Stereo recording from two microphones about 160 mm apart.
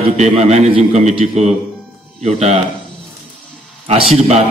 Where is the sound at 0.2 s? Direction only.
40° right (ahead or behind).